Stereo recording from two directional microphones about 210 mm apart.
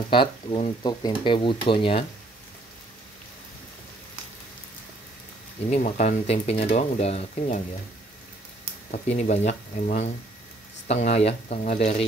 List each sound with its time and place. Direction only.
0.1 s speech: 25° left (ahead or behind)
5.7 s speech: 35° left (ahead or behind)
8.9 s speech: 35° left (ahead or behind)